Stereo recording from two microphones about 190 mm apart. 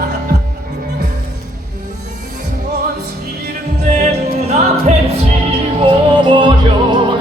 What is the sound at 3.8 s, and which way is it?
Music, 40° right (ahead or behind).